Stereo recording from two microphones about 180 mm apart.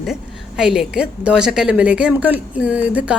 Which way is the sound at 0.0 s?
Centre (ahead or behind).